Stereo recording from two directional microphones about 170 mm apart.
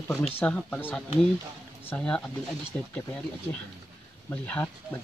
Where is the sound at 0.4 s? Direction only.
10° left (ahead or behind).